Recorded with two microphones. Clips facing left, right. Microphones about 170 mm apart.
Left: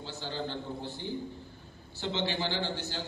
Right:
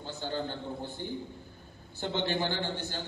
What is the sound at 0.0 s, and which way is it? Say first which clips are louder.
A man's voice: right 2 dB; 50° right (ahead or behind).